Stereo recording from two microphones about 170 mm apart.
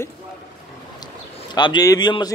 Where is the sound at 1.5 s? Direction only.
25° left (ahead or behind).